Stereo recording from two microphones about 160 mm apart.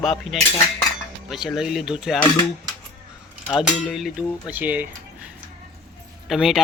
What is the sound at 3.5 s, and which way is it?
Speech, 5° right (ahead or behind).